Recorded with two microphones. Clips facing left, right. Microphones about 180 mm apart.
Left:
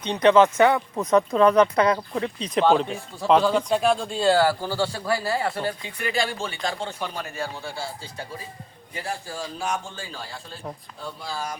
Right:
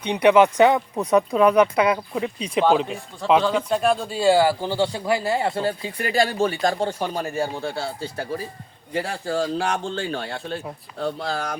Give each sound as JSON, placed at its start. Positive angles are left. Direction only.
{"t": 0.0, "sound": "speech", "side_deg": -10}
{"t": 7.6, "sound": "a man's voice", "side_deg": -65}